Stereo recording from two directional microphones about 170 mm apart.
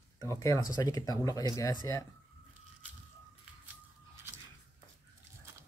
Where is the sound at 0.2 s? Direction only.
20° left (ahead or behind).